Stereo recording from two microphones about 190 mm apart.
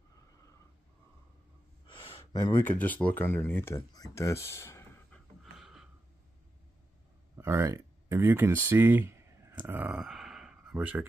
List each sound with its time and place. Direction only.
1.9 s gasp: 25° left (ahead or behind)
2.6 s speech: 10° left (ahead or behind)
5.4 s a sound: centre (ahead or behind)
7.3 s speech: 15° right (ahead or behind)